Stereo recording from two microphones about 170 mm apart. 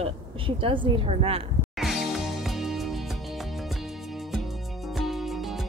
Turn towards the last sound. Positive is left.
turn(degrees=0)  # may be behind; listen again after turning